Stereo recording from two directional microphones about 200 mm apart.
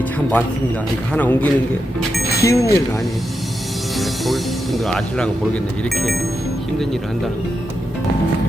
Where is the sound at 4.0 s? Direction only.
Centre (ahead or behind).